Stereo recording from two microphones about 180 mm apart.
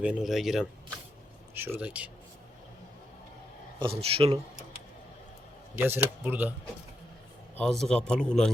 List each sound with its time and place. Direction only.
0.0 s a man's voice: 5° right (ahead or behind)
3.8 s a man's voice: 30° right (ahead or behind)
5.7 s speech: 10° right (ahead or behind)
7.5 s a man's voice: 5° left (ahead or behind)